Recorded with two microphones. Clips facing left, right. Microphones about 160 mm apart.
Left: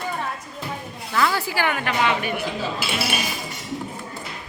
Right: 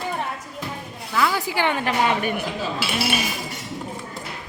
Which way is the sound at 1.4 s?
20° right (ahead or behind).